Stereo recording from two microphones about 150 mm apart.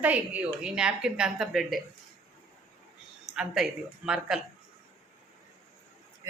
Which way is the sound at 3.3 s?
5° right (ahead or behind).